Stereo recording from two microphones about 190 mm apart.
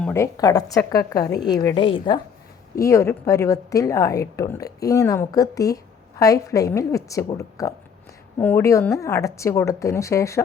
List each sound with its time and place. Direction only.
0.0 s a woman's voice: 15° left (ahead or behind)